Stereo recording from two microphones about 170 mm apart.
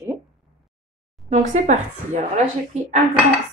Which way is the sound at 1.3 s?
45° right (ahead or behind).